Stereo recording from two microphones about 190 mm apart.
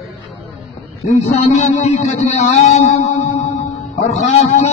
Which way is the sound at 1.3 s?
40° left (ahead or behind).